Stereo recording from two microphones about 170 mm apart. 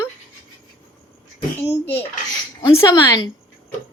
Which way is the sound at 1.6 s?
15° left (ahead or behind).